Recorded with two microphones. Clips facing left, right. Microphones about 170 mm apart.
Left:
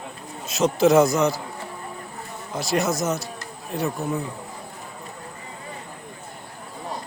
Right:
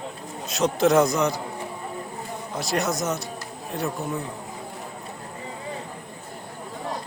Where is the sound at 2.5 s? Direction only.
Centre (ahead or behind).